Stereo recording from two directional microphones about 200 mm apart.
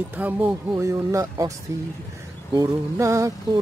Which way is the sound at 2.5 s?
15° right (ahead or behind).